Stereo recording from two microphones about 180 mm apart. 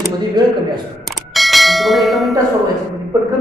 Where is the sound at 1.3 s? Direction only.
Centre (ahead or behind).